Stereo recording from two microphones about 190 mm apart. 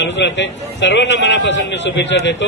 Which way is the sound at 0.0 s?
70° left (ahead or behind).